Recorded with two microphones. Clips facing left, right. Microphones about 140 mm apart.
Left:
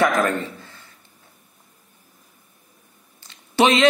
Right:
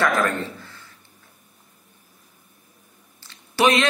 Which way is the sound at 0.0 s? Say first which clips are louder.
Left 2 dB; 20° left (ahead or behind).